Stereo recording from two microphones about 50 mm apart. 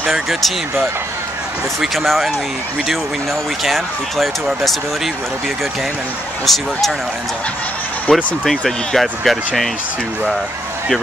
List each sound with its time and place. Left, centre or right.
0.0 s speech: centre
3.6 s speech: centre
6.4 s speech: centre
8.1 s speech: centre
8.5 s speech: centre